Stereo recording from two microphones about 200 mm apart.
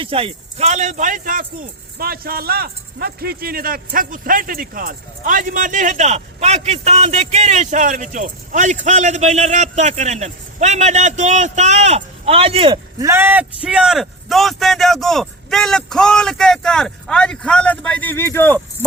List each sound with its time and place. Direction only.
0.0 s speech: 30° right (ahead or behind); by 18.6 s 10° left (ahead or behind)